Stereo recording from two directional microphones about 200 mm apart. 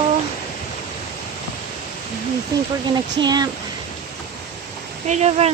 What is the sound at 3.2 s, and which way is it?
Speech, 20° right (ahead or behind).